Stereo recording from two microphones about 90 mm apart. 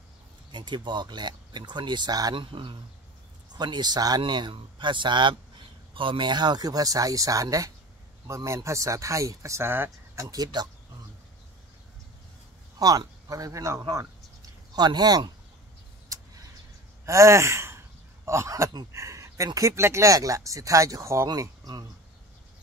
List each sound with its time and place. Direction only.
0.5 s speech: 60° right (ahead or behind)
2.3 s speech: 70° right (ahead or behind)
3.5 s speech: 55° right (ahead or behind)
4.2 s speech: 60° right (ahead or behind); by 9.8 s 25° right (ahead or behind)
10.1 s speech: 40° right (ahead or behind)
12.7 s speech: 45° right (ahead or behind)
14.8 s speech: 50° right (ahead or behind)
16.1 s vehicle: 35° right (ahead or behind)
17.0 s a sound: 35° right (ahead or behind)
18.9 s speech: 35° right (ahead or behind)
21.3 s speech: 45° right (ahead or behind)